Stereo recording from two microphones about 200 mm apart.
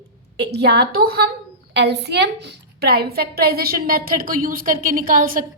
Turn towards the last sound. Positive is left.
turn(degrees=-45)  # may be behind; listen again after turning